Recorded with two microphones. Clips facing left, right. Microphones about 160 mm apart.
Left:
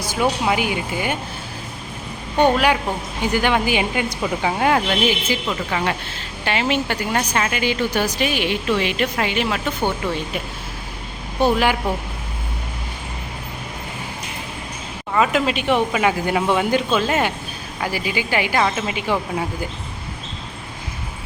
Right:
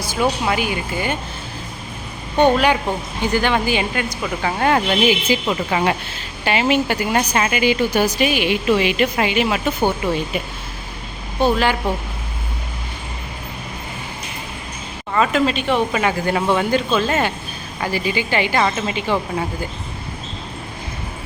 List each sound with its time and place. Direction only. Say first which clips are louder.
0.0 s speech: even; 15° left (ahead or behind)
2.4 s speech: right 2 dB; 5° left (ahead or behind)
4.9 s speech: right 3 dB; 10° right (ahead or behind)
6.4 s speech: right 3 dB; 5° right (ahead or behind)
11.3 s speech: even; 15° left (ahead or behind)
15.1 s speech: right 1 dB; 10° left (ahead or behind)